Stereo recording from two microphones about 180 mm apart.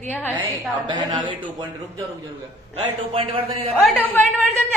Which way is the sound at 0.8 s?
25° right (ahead or behind).